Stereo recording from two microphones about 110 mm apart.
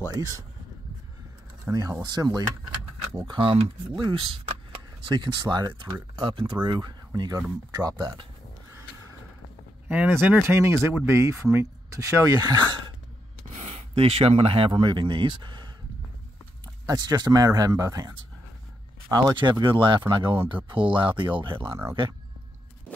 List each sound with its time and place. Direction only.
0.1 s speech: 30° right (ahead or behind)
1.7 s speech: 30° right (ahead or behind)
3.3 s speech: 50° right (ahead or behind)
6.1 s speech: 55° right (ahead or behind); by 7.4 s 35° right (ahead or behind)
7.7 s a sound: 40° right (ahead or behind)
9.8 s speech: 15° right (ahead or behind); by 12.7 s 40° right (ahead or behind)
13.5 s speech: 90° right; by 15.7 s 45° right (ahead or behind)
16.8 s speech: 40° right (ahead or behind)
19.6 s speech: 45° right (ahead or behind)